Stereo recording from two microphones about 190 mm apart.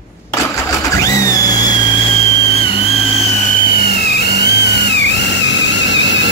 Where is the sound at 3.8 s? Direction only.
55° left (ahead or behind).